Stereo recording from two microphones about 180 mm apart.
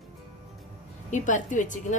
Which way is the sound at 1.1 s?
45° left (ahead or behind).